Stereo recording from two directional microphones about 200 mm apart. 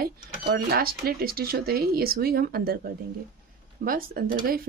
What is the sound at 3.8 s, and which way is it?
Speech, 45° right (ahead or behind).